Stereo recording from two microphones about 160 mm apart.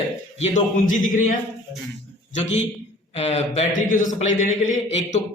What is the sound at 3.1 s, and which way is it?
Speech, 40° left (ahead or behind).